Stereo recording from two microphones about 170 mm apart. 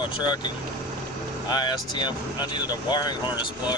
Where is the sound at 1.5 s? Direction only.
25° left (ahead or behind).